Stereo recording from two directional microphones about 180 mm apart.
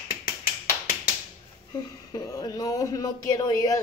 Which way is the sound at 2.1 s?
20° left (ahead or behind).